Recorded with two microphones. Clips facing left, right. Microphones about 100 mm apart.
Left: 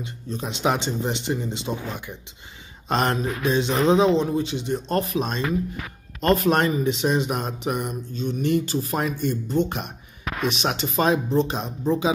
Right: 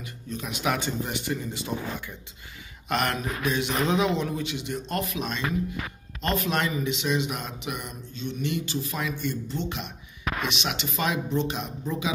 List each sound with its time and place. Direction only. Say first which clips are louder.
0.0 s a man's voice: left 4 dB; 30° left (ahead or behind)